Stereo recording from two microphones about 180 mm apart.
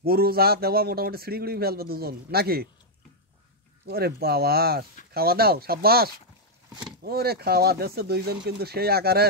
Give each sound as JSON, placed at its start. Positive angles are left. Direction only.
{"t": 0.0, "sound": "a man's voice", "side_deg": -60}
{"t": 3.8, "sound": "a man's voice", "side_deg": -60}